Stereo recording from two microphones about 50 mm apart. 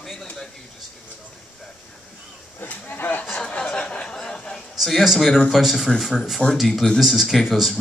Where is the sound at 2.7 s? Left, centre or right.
Left.